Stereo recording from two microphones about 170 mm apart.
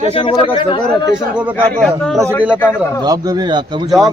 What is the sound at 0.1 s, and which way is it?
Speech, 30° left (ahead or behind).